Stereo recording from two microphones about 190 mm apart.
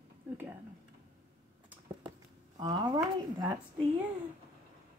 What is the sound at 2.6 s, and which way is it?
Speech, 20° right (ahead or behind).